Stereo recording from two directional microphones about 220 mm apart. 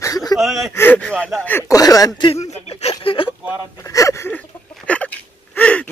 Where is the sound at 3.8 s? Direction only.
15° left (ahead or behind).